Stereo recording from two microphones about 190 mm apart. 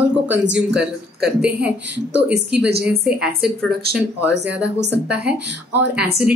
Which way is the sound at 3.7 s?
55° right (ahead or behind).